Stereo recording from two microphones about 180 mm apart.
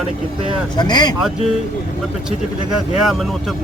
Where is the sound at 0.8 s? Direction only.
25° left (ahead or behind).